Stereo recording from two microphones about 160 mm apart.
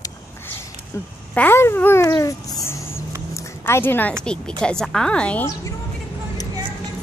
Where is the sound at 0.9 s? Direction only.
20° left (ahead or behind).